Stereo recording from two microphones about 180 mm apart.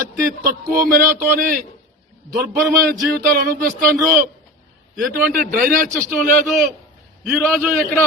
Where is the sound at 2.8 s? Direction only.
55° right (ahead or behind).